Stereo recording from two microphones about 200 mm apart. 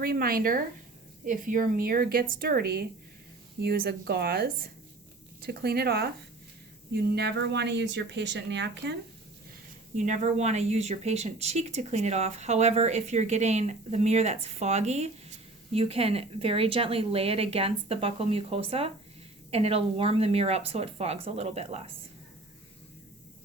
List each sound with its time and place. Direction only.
0.0 s speech: 45° right (ahead or behind)
7.2 s speech: 55° right (ahead or behind)
9.9 s speech: 40° right (ahead or behind)